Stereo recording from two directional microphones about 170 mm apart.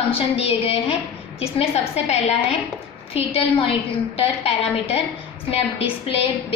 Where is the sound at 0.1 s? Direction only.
35° left (ahead or behind).